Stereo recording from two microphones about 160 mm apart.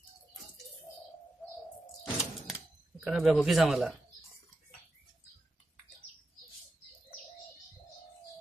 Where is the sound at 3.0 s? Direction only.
Centre (ahead or behind).